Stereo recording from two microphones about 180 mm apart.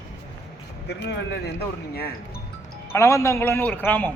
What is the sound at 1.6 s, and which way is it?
Speech, 60° left (ahead or behind).